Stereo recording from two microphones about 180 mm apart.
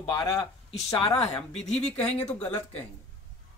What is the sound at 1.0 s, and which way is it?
Speech, 35° left (ahead or behind).